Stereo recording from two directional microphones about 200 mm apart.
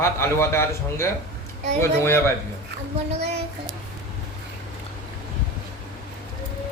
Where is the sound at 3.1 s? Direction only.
35° right (ahead or behind).